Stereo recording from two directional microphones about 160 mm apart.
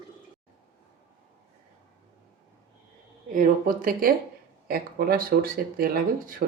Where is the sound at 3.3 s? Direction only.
60° right (ahead or behind).